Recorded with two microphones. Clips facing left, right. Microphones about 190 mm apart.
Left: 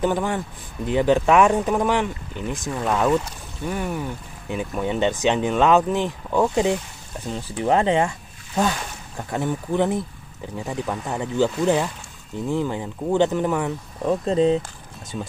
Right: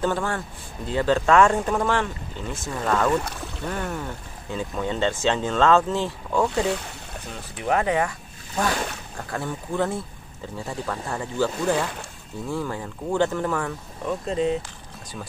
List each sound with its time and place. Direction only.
0.0 s speech: 15° left (ahead or behind)
7.2 s speech: 30° left (ahead or behind)
9.3 s speech: 20° left (ahead or behind)
14.0 s speech: 35° left (ahead or behind)